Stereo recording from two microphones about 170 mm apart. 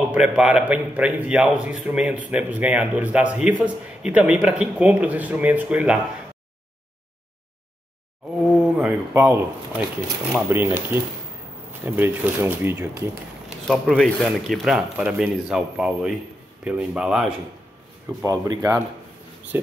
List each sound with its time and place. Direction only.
0.1 s a man's voice: 5° right (ahead or behind)
8.2 s a sound: centre (ahead or behind)
10.3 s a man's voice: 15° right (ahead or behind)
13.5 s speech: 5° left (ahead or behind)
18.2 s a man's voice: 20° right (ahead or behind)